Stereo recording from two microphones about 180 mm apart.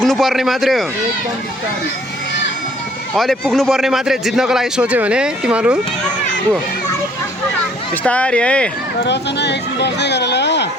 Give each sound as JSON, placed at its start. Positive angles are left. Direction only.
{"t": 0.0, "sound": "a man's voice", "side_deg": 0}
{"t": 3.2, "sound": "a man's voice", "side_deg": 0}
{"t": 8.0, "sound": "speech", "side_deg": 5}
{"t": 9.0, "sound": "speech", "side_deg": 70}